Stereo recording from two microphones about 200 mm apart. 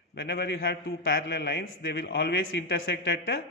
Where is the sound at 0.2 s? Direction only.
55° left (ahead or behind).